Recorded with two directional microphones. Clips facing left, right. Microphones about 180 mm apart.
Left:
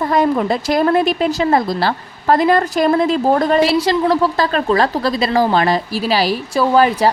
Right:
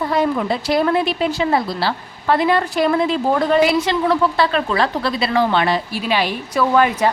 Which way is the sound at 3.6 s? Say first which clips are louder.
Left 2 dB; 35° left (ahead or behind).